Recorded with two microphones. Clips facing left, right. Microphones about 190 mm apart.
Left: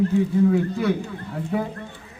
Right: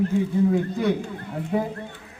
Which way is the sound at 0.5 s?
20° right (ahead or behind).